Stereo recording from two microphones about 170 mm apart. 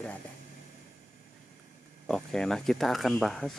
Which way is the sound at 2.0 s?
5° left (ahead or behind).